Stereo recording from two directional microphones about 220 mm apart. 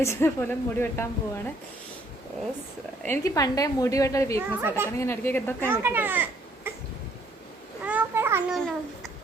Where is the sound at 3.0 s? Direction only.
15° left (ahead or behind).